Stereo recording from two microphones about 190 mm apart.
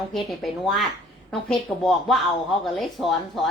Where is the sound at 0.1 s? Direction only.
Centre (ahead or behind).